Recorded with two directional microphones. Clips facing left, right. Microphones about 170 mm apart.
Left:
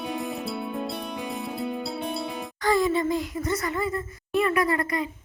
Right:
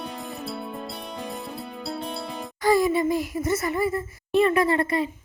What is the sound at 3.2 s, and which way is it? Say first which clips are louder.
Speech: right 3 dB; 20° right (ahead or behind).